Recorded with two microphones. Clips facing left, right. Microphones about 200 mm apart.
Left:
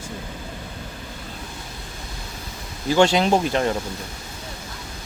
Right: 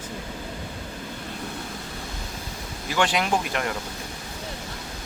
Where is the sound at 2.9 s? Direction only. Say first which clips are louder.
Left 7 dB; 25° left (ahead or behind).